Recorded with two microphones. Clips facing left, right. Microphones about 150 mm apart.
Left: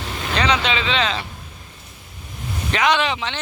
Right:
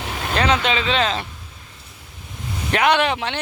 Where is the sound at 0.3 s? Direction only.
50° right (ahead or behind).